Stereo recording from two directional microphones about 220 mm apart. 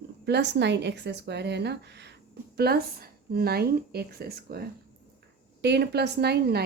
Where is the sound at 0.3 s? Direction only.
50° right (ahead or behind).